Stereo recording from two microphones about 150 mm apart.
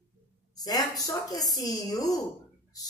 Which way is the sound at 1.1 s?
25° left (ahead or behind).